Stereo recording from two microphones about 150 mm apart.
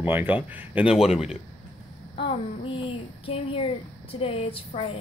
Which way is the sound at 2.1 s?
40° left (ahead or behind).